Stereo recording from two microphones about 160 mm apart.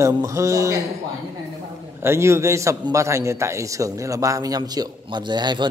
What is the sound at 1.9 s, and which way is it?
A man's voice, 15° right (ahead or behind).